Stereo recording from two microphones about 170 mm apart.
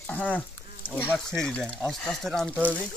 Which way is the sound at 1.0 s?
5° left (ahead or behind).